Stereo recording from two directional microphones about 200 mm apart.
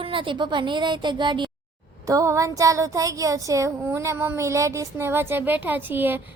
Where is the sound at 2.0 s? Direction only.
15° right (ahead or behind).